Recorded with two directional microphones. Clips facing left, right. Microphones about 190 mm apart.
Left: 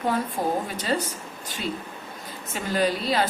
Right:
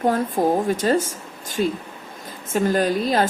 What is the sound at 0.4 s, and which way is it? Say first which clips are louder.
A woman's voice: right 7 dB; 45° right (ahead or behind).